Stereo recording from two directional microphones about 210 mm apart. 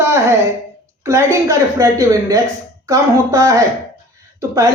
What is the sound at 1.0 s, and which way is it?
A woman's voice, 15° right (ahead or behind).